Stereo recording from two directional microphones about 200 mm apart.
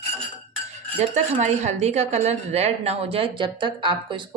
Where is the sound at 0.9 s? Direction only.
35° right (ahead or behind).